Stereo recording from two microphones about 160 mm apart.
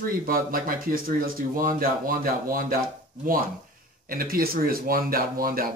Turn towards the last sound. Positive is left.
turn(degrees=-65)  # may be behind; listen again after turning